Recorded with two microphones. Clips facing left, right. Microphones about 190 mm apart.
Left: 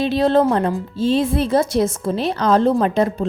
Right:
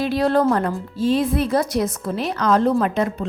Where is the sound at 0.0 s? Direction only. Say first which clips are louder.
Left 2 dB; 25° left (ahead or behind).